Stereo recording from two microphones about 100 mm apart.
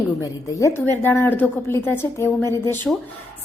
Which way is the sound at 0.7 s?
20° left (ahead or behind).